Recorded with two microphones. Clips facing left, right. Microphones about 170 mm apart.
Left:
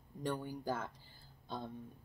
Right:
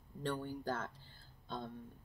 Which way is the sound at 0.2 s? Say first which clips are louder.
Even; 10° left (ahead or behind).